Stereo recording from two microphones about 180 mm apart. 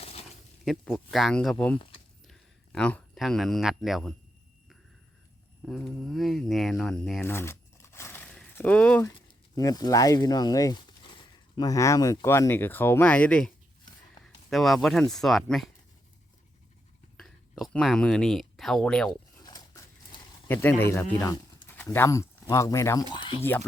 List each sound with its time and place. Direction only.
0.0 s a sound: 35° left (ahead or behind)
0.6 s speech: centre (ahead or behind)
5.6 s speech: centre (ahead or behind)
9.6 s speech: 20° left (ahead or behind)
14.5 s speech: centre (ahead or behind)
17.2 s speech: centre (ahead or behind)
19.4 s dog: 20° left (ahead or behind)
20.5 s speech: 10° left (ahead or behind)
23.1 s speech: 30° left (ahead or behind)
23.4 s speech: 10° left (ahead or behind)